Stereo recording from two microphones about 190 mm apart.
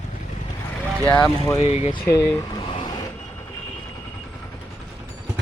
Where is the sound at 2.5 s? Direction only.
25° left (ahead or behind).